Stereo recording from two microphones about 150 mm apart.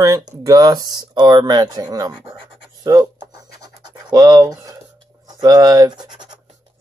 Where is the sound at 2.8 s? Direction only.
25° right (ahead or behind).